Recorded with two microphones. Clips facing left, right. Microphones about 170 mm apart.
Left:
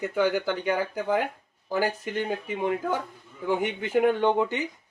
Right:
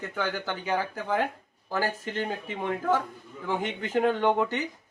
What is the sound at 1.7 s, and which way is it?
Speech, 15° left (ahead or behind).